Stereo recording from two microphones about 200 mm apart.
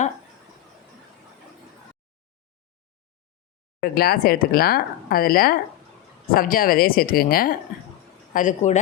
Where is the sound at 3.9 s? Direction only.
50° left (ahead or behind).